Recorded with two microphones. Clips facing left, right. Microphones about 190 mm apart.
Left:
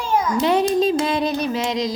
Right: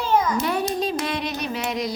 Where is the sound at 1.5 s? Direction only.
90° left.